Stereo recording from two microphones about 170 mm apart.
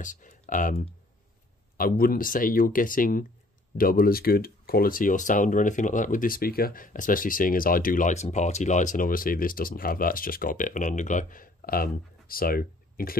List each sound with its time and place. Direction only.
0.0 s speech: 50° left (ahead or behind)